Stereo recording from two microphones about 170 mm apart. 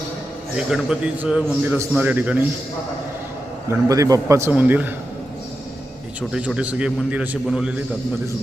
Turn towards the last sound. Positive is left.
turn(degrees=-5)  # may be behind; listen again after turning